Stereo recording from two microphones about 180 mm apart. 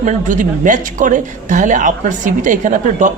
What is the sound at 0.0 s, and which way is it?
Speech, 40° right (ahead or behind).